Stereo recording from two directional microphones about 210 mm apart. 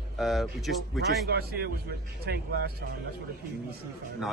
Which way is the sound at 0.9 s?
50° right (ahead or behind).